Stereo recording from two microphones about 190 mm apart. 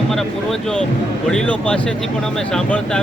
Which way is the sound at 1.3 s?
5° left (ahead or behind).